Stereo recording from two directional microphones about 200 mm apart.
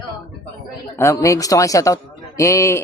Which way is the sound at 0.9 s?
15° left (ahead or behind).